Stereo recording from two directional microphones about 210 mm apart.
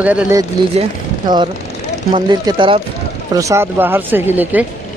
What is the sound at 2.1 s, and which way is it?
Speech, 25° right (ahead or behind).